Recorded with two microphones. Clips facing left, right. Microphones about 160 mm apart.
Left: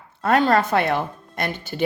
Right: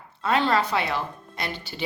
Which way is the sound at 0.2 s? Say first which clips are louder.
Left 5 dB; 50° left (ahead or behind).